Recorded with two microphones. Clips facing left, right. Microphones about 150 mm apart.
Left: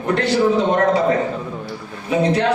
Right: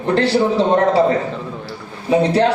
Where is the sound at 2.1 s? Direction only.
30° right (ahead or behind).